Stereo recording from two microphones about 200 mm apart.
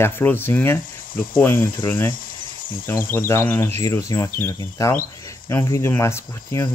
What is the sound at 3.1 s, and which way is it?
Speech, 10° left (ahead or behind).